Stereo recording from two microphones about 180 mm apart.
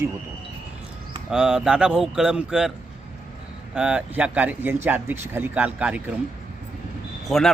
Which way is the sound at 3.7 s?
5° right (ahead or behind).